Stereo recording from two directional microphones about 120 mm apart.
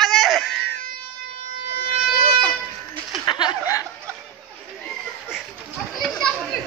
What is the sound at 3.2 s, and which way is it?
Chuckle, 35° left (ahead or behind).